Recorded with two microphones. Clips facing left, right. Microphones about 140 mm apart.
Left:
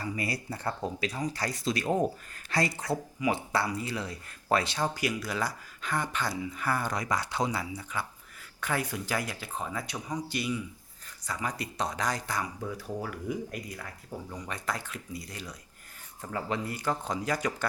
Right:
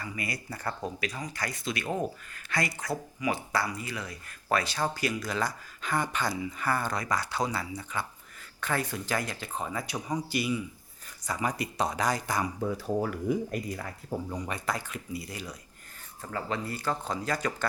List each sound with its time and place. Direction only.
0.0 s speech: 35° left (ahead or behind); by 10.6 s 5° right (ahead or behind)
11.3 s speech: 15° right (ahead or behind)
12.7 s speech: 35° right (ahead or behind)
14.5 s speech: centre (ahead or behind)
16.2 s speech: 15° left (ahead or behind)